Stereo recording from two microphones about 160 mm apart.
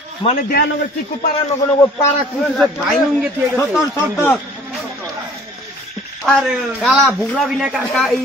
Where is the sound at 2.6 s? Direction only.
Centre (ahead or behind).